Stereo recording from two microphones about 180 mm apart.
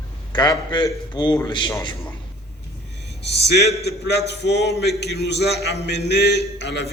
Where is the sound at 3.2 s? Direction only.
65° left (ahead or behind).